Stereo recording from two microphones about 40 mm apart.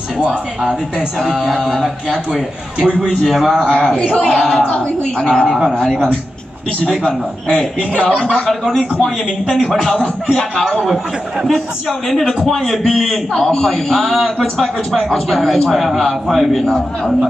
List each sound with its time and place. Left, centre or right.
0.2 s speech: centre
1.8 s a man's voice: centre
2.8 s a woman's voice: left
3.3 s a man's voice: centre
3.6 s a woman's voice: left
4.2 s speech: centre
4.7 s a woman's voice: left
7.1 s a woman's voice: centre
8.2 s a man's voice: left
9.5 s speech: centre
10.3 s speech: centre
12.1 s a man's voice: centre
13.3 s a man's voice: centre
16.6 s speech: centre